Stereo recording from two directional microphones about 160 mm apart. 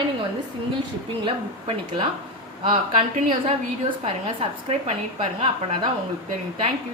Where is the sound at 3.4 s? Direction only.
35° right (ahead or behind).